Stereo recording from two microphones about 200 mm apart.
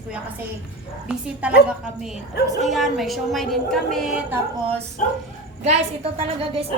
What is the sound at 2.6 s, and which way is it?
A woman's voice, centre (ahead or behind).